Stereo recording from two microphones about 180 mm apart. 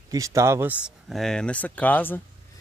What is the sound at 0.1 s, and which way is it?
Speech, 20° right (ahead or behind).